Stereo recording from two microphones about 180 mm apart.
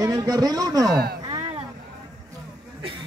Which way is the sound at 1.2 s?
25° right (ahead or behind).